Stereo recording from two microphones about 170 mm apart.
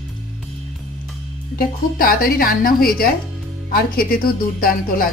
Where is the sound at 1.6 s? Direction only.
60° left (ahead or behind).